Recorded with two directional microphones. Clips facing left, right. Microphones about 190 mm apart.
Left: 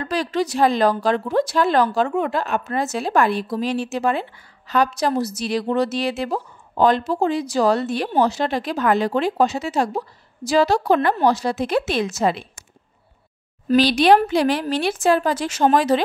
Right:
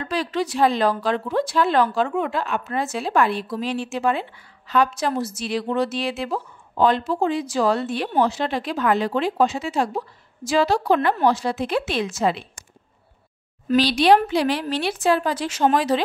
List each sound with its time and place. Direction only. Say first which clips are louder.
0.0 s a woman's voice: left 2 dB; 40° left (ahead or behind)
13.7 s a woman's voice: left 2 dB; 50° left (ahead or behind)